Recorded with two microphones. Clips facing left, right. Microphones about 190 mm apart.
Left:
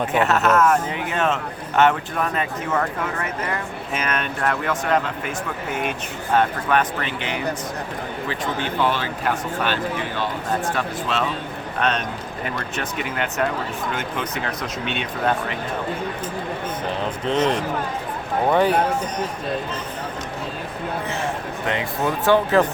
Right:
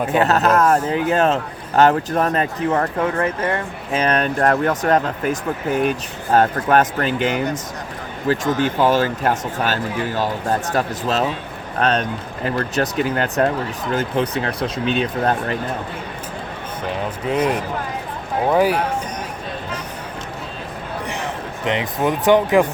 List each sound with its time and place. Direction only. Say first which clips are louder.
0.2 s speech: right 2 dB; 35° right (ahead or behind)
17.2 s a man's voice: right 1 dB; 10° right (ahead or behind)
21.1 s speech: left 1 dB; 20° right (ahead or behind)